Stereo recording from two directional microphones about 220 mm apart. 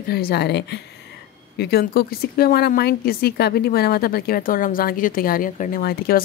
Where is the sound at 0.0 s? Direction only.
45° left (ahead or behind).